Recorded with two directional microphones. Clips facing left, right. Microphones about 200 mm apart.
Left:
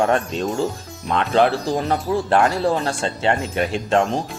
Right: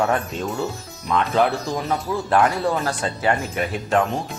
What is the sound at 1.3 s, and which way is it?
Speech, 30° left (ahead or behind).